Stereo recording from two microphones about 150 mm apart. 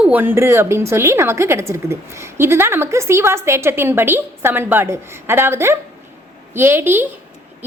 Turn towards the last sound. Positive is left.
turn(degrees=-15)  # may be behind; listen again after turning